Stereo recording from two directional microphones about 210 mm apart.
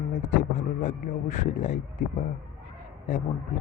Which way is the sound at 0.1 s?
35° left (ahead or behind).